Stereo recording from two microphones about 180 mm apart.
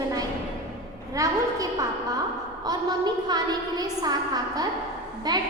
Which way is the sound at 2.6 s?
25° right (ahead or behind).